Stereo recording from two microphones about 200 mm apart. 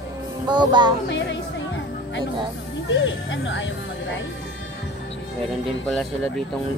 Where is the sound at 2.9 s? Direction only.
65° left (ahead or behind).